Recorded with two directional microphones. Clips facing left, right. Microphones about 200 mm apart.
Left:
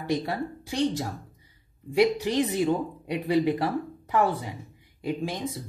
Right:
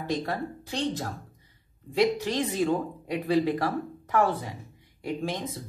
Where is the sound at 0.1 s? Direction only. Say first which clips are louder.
Left 2 dB; 10° left (ahead or behind).